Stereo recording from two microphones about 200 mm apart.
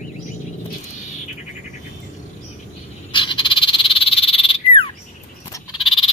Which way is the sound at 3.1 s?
25° left (ahead or behind).